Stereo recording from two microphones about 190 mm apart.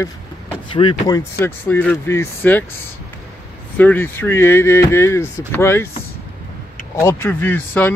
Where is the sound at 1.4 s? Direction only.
10° left (ahead or behind).